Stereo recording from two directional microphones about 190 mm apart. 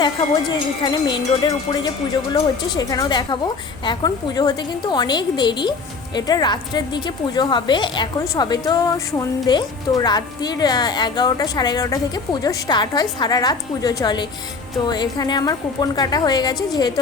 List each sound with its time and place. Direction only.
0.0 s a woman's voice: 25° left (ahead or behind)